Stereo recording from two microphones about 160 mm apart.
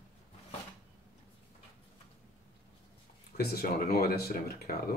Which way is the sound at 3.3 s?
70° left (ahead or behind).